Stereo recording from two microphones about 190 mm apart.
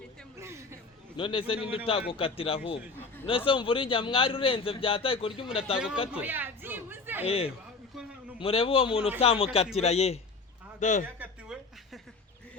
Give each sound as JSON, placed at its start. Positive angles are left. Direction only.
{"t": 0.3, "sound": "a sound", "side_deg": -15}
{"t": 1.1, "sound": "a man's voice", "side_deg": 25}
{"t": 5.7, "sound": "speech", "side_deg": -5}
{"t": 6.1, "sound": "chatter", "side_deg": -10}
{"t": 7.3, "sound": "a man's voice", "side_deg": 30}
{"t": 11.2, "sound": "a sound", "side_deg": -5}